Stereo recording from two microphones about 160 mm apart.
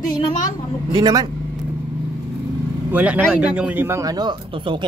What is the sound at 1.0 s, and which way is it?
Speech, 25° right (ahead or behind).